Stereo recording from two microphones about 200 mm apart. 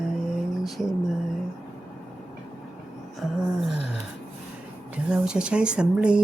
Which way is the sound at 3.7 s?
60° left (ahead or behind).